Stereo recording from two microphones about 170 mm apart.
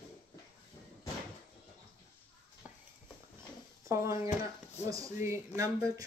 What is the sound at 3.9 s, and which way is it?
Speech, 15° right (ahead or behind).